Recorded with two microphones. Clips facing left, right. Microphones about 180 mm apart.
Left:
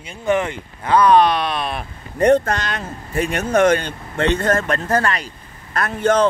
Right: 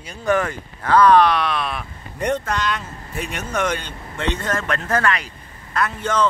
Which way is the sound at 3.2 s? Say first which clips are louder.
Left 8 dB; 55° left (ahead or behind).